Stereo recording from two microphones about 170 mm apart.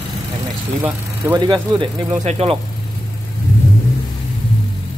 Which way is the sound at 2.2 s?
35° right (ahead or behind).